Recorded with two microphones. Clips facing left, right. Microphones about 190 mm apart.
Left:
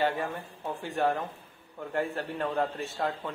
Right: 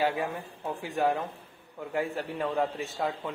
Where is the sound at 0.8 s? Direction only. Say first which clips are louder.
Right 1 dB; 10° right (ahead or behind).